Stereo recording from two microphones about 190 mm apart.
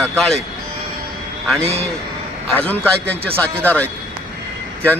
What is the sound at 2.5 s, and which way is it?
A man's voice, 5° left (ahead or behind).